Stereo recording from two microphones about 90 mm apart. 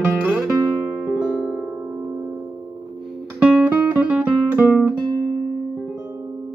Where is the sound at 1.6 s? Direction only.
25° right (ahead or behind).